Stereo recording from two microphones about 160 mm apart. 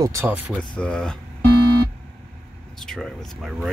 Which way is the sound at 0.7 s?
5° left (ahead or behind).